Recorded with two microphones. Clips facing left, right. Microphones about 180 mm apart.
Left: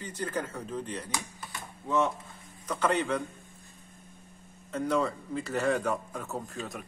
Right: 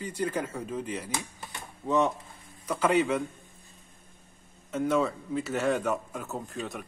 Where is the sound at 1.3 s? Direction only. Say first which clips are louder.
Even; 20° right (ahead or behind).